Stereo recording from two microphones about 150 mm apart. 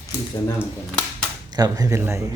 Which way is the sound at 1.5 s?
25° right (ahead or behind).